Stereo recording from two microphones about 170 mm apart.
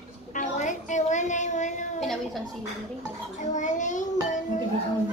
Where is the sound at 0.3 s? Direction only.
50° left (ahead or behind).